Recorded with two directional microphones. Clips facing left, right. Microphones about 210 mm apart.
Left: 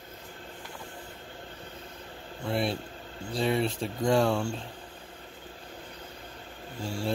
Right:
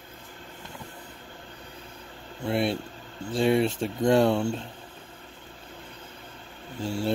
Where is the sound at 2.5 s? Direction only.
5° right (ahead or behind).